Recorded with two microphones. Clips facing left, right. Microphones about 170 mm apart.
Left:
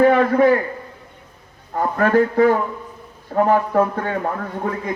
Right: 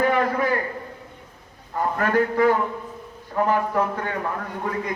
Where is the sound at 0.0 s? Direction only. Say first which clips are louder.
Left 8 dB; 35° left (ahead or behind).